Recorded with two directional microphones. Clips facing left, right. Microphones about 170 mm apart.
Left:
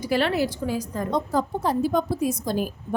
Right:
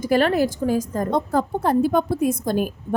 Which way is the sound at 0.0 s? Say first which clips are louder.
Right 4 dB; 45° right (ahead or behind).